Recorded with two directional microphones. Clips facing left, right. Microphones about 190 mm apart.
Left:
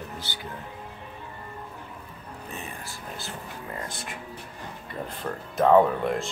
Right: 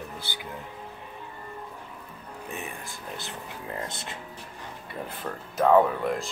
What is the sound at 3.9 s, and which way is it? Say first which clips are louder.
Speech: left 1 dB; 25° right (ahead or behind).